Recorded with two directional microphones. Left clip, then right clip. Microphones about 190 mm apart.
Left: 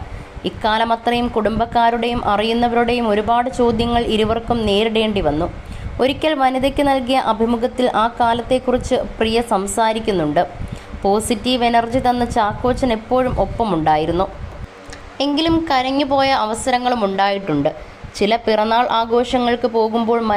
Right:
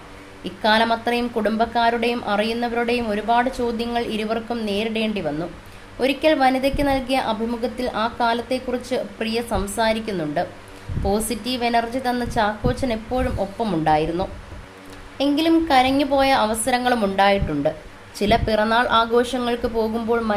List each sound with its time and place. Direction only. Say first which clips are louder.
0.4 s a woman's voice: left 1 dB; 20° left (ahead or behind)